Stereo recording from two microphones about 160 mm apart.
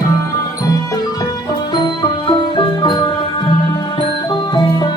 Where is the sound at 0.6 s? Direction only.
20° left (ahead or behind).